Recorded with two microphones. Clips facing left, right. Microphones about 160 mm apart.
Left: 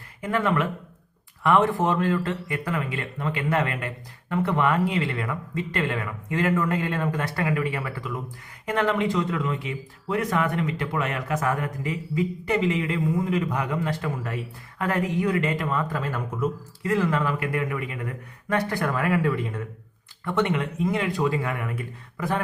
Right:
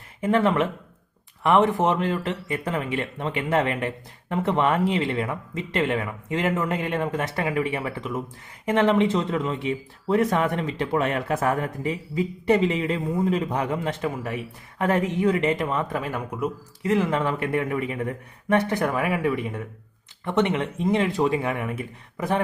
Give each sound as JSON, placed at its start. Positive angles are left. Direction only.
{"t": 0.2, "sound": "speech", "side_deg": -25}